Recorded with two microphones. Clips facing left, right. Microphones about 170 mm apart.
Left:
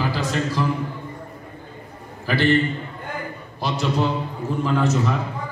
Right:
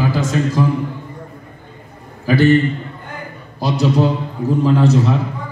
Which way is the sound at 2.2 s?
45° right (ahead or behind).